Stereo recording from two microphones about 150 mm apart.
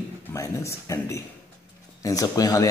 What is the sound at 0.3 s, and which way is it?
A man's voice, 20° left (ahead or behind).